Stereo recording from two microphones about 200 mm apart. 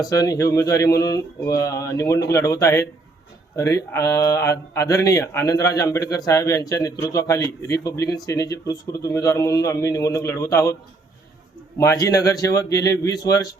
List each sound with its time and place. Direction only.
0.0 s speech: 20° left (ahead or behind)
11.8 s speech: 15° left (ahead or behind)